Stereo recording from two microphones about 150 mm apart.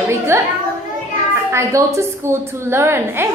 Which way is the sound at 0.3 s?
15° right (ahead or behind).